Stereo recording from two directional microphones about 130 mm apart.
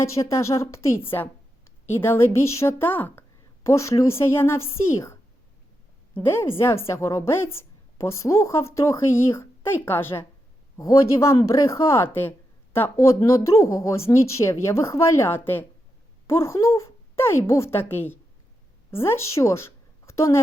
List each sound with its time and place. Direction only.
0.0 s a woman's voice: 20° left (ahead or behind)
6.2 s a woman's voice: 20° left (ahead or behind)